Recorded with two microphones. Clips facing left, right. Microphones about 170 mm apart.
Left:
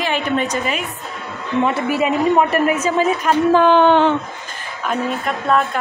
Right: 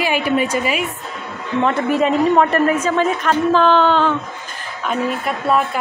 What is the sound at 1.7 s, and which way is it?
A man's voice, 5° left (ahead or behind).